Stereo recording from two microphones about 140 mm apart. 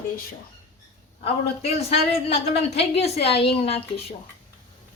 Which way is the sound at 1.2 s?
45° left (ahead or behind).